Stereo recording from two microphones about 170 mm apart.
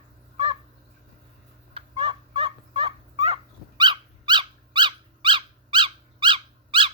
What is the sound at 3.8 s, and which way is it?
Cat, 25° right (ahead or behind).